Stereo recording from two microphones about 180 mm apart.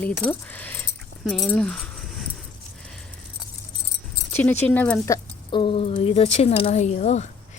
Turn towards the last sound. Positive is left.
turn(degrees=40)  # may be behind; listen again after turning